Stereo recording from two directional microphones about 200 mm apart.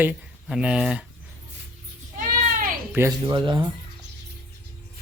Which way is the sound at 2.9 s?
15° right (ahead or behind).